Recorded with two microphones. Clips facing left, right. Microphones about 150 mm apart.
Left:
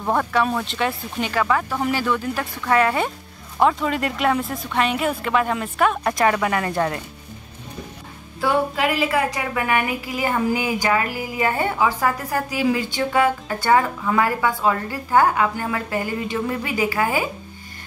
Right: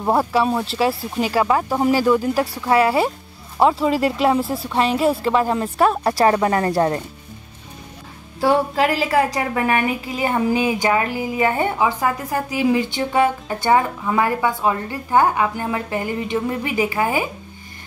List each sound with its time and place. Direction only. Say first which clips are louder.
0.0 s speech: right 3 dB; 30° right (ahead or behind)
1.7 s speech: right 6 dB; 40° right (ahead or behind)
8.4 s a woman's voice: right 3 dB; 35° right (ahead or behind); by 17.3 s 20° right (ahead or behind)